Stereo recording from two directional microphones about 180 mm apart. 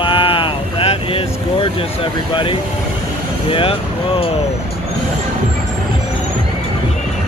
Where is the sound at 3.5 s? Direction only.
30° left (ahead or behind).